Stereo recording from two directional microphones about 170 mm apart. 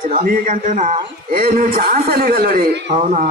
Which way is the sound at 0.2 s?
50° right (ahead or behind).